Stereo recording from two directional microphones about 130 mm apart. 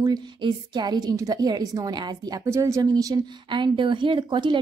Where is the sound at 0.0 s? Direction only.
35° right (ahead or behind).